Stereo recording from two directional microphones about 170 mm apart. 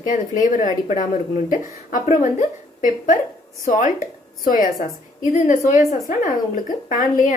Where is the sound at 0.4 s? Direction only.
50° left (ahead or behind).